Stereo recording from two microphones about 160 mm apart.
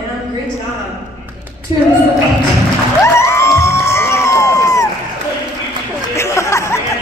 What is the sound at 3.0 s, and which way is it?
Crowd, 15° left (ahead or behind).